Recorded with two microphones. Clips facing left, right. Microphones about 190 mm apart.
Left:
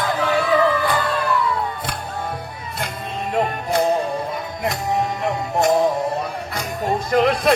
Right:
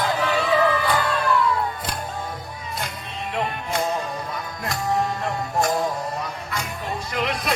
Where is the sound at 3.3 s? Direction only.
35° left (ahead or behind).